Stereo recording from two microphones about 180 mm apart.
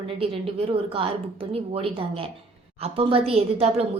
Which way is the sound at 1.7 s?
30° right (ahead or behind).